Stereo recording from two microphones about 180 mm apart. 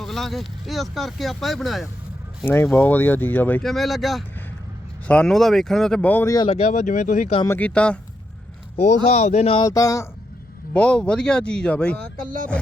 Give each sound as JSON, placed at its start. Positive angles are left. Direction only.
{"t": 0.0, "sound": "speech", "side_deg": 0}
{"t": 2.4, "sound": "speech", "side_deg": 10}
{"t": 6.5, "sound": "speech", "side_deg": 40}
{"t": 7.4, "sound": "speech", "side_deg": 10}
{"t": 8.7, "sound": "speech", "side_deg": 35}
{"t": 9.6, "sound": "speech", "side_deg": 20}
{"t": 10.8, "sound": "speech", "side_deg": 5}
{"t": 11.9, "sound": "speech", "side_deg": -50}